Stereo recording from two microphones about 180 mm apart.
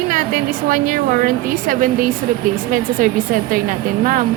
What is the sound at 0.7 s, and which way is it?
A woman's voice, 50° right (ahead or behind).